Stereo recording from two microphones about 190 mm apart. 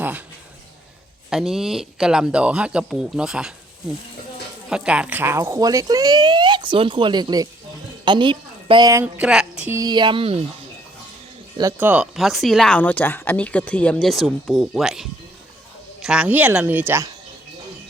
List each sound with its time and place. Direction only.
1.3 s speech: centre (ahead or behind)
4.7 s a woman's voice: 5° right (ahead or behind)
9.6 s speech: 20° right (ahead or behind)
11.5 s a woman's voice: 15° right (ahead or behind)